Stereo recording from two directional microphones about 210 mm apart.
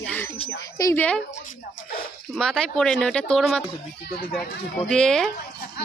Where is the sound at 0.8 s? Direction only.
10° left (ahead or behind).